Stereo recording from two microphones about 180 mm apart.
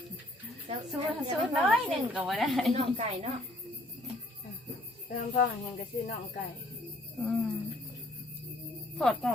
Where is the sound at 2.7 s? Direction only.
35° right (ahead or behind).